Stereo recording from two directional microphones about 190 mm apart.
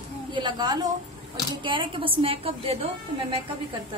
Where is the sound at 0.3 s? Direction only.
25° right (ahead or behind).